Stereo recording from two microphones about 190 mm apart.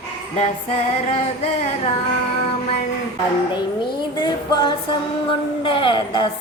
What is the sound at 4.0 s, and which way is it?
Music, 25° left (ahead or behind).